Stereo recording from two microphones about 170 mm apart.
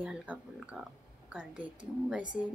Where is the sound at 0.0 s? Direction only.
5° right (ahead or behind).